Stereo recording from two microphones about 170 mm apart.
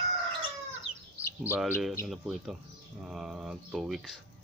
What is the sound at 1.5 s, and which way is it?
Speech, 10° right (ahead or behind).